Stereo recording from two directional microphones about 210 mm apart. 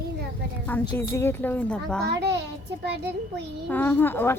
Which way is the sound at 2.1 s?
55° right (ahead or behind).